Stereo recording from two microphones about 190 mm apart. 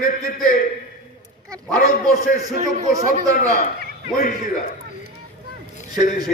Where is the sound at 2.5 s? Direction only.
40° right (ahead or behind).